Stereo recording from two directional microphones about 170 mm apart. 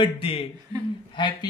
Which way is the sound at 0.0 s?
30° left (ahead or behind).